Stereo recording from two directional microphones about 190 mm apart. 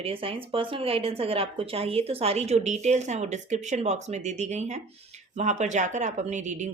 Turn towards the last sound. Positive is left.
turn(degrees=-40)  # may be behind; listen again after turning